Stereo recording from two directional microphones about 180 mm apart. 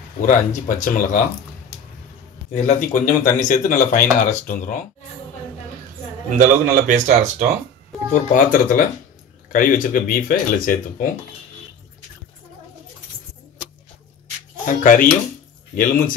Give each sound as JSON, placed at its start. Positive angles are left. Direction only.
{"t": 0.3, "sound": "speech", "side_deg": 45}
{"t": 2.5, "sound": "speech", "side_deg": 40}
{"t": 6.3, "sound": "speech", "side_deg": -45}
{"t": 8.1, "sound": "speech", "side_deg": 45}
{"t": 14.7, "sound": "speech", "side_deg": 50}